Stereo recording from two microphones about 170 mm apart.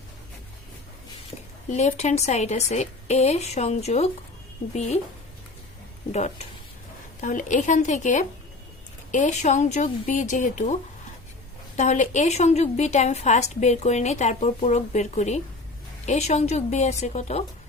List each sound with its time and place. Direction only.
1.9 s a woman's voice: 40° left (ahead or behind)
6.1 s a woman's voice: 40° left (ahead or behind)
11.8 s a woman's voice: 45° left (ahead or behind)